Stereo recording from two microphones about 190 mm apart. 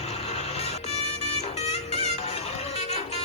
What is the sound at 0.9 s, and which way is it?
Music, 35° left (ahead or behind).